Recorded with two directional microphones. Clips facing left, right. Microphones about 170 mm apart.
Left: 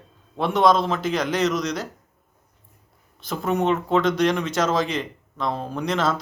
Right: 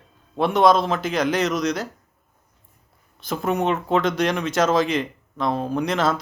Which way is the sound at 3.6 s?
5° right (ahead or behind).